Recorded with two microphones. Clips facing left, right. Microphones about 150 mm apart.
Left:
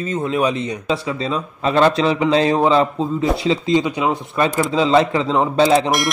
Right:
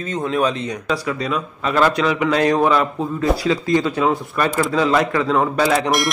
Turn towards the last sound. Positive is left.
turn(degrees=0)  # may be behind; listen again after turning